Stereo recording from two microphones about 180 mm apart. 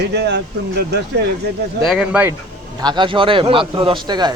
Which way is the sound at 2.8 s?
25° right (ahead or behind).